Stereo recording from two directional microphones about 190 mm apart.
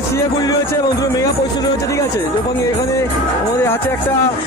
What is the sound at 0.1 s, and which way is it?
Speech, 15° left (ahead or behind).